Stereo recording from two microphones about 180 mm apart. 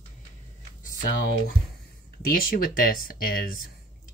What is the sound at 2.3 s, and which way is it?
Speech, 50° left (ahead or behind).